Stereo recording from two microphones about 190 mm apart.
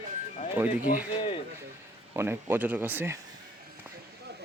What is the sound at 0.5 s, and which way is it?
Speech, 10° right (ahead or behind).